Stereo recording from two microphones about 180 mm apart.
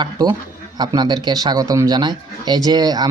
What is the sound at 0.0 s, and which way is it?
Speech, 25° right (ahead or behind).